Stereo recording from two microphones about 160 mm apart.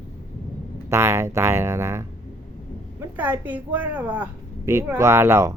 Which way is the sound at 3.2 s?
10° right (ahead or behind).